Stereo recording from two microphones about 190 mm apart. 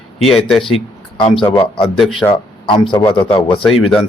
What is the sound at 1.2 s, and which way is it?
Speech, 25° left (ahead or behind).